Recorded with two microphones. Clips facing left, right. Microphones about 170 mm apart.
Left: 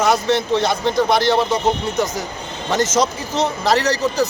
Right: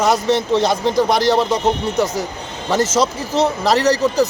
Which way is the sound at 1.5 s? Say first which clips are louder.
Right 1 dB; 10° right (ahead or behind).